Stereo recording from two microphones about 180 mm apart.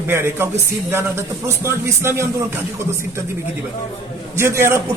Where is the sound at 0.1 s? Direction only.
15° right (ahead or behind).